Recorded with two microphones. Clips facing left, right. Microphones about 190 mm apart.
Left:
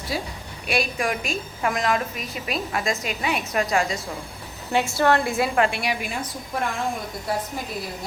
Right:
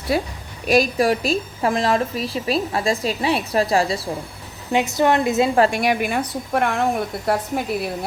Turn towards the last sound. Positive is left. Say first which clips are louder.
# right 7 dB
turn(degrees=-65)  # may be behind; listen again after turning